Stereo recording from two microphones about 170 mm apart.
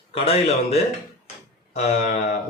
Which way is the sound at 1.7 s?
40° left (ahead or behind).